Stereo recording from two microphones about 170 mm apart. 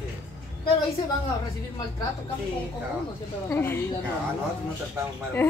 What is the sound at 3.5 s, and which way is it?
Speech, 15° left (ahead or behind).